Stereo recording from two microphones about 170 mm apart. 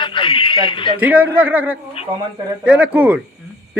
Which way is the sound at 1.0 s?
10° right (ahead or behind).